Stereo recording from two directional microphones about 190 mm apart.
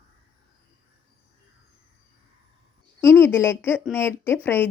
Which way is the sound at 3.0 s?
15° left (ahead or behind).